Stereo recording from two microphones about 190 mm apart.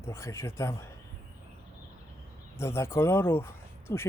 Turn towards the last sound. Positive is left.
turn(degrees=10)  # may be behind; listen again after turning